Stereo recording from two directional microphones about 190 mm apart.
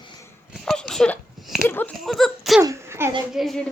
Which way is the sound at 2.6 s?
15° right (ahead or behind).